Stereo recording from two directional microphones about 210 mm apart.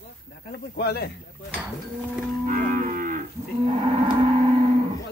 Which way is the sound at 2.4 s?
40° right (ahead or behind).